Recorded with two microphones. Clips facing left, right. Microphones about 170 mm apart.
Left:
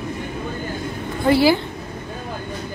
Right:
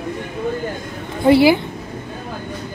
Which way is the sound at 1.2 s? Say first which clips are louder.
Right 4 dB; 20° right (ahead or behind).